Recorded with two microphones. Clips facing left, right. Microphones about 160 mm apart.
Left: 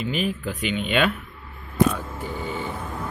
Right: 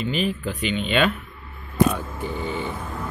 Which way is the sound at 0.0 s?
10° left (ahead or behind).